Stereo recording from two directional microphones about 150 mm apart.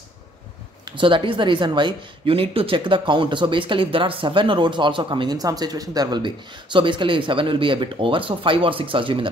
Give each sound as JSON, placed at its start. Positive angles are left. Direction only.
{"t": 0.8, "sound": "speech", "side_deg": -35}